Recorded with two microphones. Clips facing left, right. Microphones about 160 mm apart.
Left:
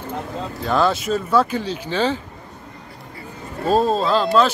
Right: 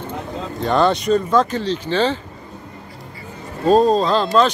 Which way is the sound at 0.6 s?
5° left (ahead or behind).